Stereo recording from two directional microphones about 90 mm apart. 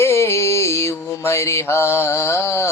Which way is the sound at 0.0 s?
30° left (ahead or behind).